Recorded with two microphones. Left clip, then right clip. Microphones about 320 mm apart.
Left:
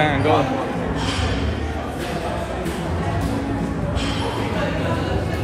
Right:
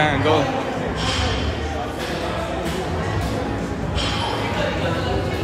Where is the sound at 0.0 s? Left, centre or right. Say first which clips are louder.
Even; centre.